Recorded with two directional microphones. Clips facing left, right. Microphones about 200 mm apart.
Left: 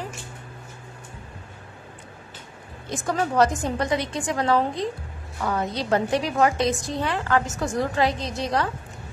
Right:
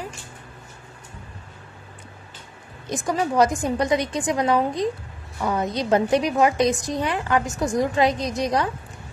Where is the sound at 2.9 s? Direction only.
15° right (ahead or behind).